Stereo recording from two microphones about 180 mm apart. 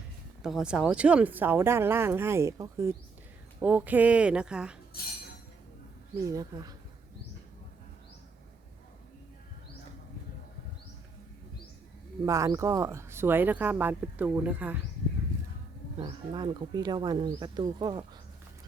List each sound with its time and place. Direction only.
0.4 s speech: 5° right (ahead or behind)
6.1 s speech: 20° right (ahead or behind)
12.2 s speech: 15° right (ahead or behind)
16.0 s speech: 25° right (ahead or behind)